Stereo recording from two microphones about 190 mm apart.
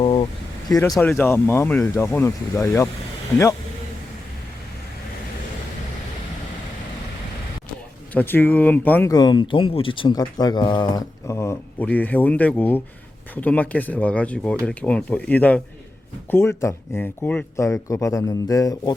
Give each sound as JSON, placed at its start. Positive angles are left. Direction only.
{"t": 0.0, "sound": "vehicle", "side_deg": 25}
{"t": 0.7, "sound": "speech", "side_deg": 20}
{"t": 0.9, "sound": "speech", "side_deg": 5}
{"t": 8.1, "sound": "speech", "side_deg": 10}